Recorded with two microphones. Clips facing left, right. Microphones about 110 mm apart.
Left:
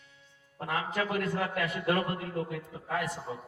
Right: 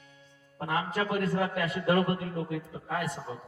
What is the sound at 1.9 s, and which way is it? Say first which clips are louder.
A man's voice: right 5 dB; centre (ahead or behind).